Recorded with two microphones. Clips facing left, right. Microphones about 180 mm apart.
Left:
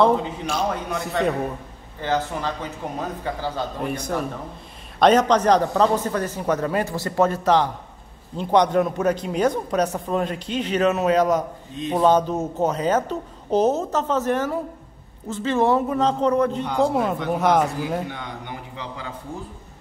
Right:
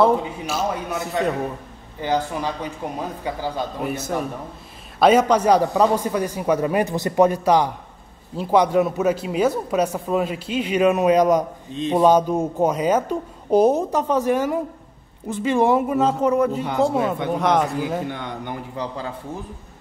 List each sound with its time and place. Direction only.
0.0 s a man's voice: 5° right (ahead or behind)
2.0 s speech: 15° right (ahead or behind)
11.7 s speech: 25° right (ahead or behind)
12.0 s a man's voice: 10° right (ahead or behind)